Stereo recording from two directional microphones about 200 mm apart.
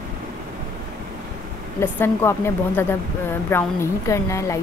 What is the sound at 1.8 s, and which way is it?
A woman's voice, 10° left (ahead or behind).